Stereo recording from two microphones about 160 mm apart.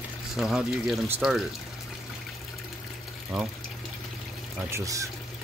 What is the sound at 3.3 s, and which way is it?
Speech, centre (ahead or behind).